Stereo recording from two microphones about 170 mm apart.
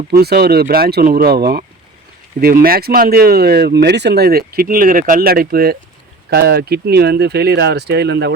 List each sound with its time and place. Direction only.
0.1 s speech: 70° right (ahead or behind)